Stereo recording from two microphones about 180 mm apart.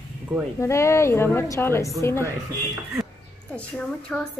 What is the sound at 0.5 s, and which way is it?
A woman's voice, 15° left (ahead or behind).